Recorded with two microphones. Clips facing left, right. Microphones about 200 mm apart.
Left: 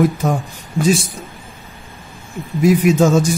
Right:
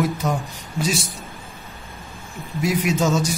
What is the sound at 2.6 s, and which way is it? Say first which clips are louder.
Speech: left 8 dB; 50° left (ahead or behind).